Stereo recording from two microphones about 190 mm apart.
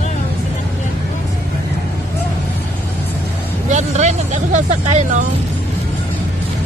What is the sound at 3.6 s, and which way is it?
Speech, 40° right (ahead or behind).